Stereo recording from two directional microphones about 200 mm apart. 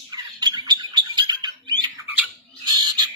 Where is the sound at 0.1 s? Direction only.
20° right (ahead or behind).